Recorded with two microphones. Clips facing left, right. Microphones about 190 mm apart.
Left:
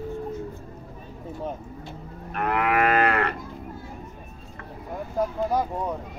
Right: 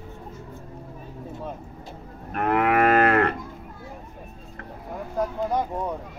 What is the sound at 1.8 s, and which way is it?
Moo, 40° right (ahead or behind).